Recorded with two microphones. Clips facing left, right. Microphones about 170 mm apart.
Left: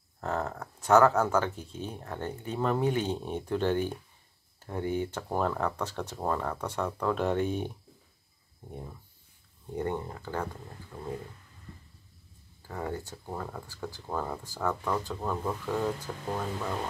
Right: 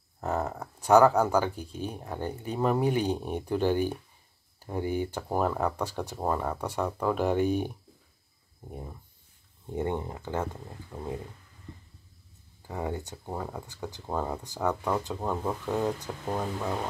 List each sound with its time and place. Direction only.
0.2 s speech: 15° right (ahead or behind)
12.6 s speech: 20° right (ahead or behind)